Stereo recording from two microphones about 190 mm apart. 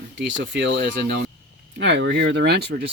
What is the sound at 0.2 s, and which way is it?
Speech, 75° right (ahead or behind).